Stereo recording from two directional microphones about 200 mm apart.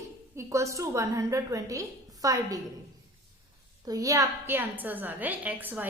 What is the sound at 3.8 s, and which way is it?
A woman's voice, 15° right (ahead or behind).